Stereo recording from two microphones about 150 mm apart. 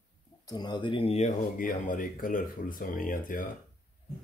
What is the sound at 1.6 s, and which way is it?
Speech, 65° left (ahead or behind).